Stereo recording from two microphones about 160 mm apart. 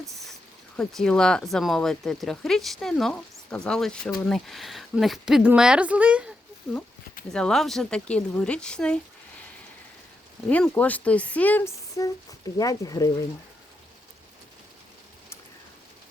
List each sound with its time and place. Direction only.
0.8 s a woman's voice: 5° left (ahead or behind)
7.3 s speech: 5° left (ahead or behind)
10.5 s speech: 10° left (ahead or behind)